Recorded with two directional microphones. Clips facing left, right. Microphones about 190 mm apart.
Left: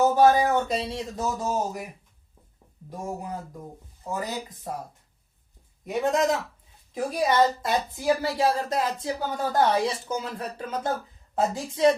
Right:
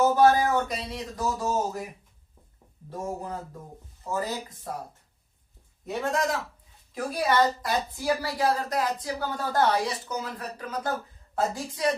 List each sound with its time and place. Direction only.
0.0 s a woman's voice: 15° left (ahead or behind)
2.9 s speech: 10° left (ahead or behind)
5.8 s a woman's voice: 15° left (ahead or behind)